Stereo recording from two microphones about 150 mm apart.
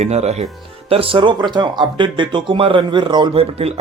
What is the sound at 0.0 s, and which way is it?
Speech, 45° right (ahead or behind).